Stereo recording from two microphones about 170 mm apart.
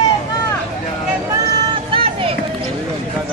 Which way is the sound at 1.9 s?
30° right (ahead or behind).